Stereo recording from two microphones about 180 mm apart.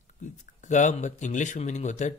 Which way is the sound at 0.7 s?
40° left (ahead or behind).